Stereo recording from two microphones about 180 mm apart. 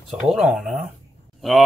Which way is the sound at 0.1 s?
Centre (ahead or behind).